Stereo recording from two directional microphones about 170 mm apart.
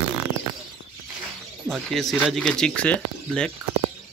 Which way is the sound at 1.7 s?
Centre (ahead or behind).